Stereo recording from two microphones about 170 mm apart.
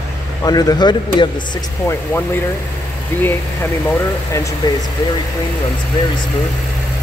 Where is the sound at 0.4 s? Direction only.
20° left (ahead or behind).